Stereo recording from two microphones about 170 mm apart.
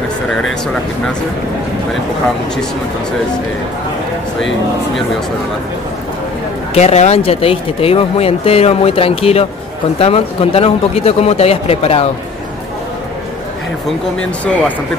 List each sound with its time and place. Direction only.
6.7 s speech: 40° left (ahead or behind)